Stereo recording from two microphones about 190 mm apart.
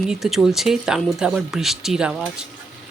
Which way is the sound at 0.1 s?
Centre (ahead or behind).